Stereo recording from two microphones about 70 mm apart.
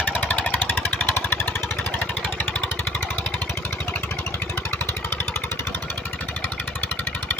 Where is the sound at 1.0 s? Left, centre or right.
Left.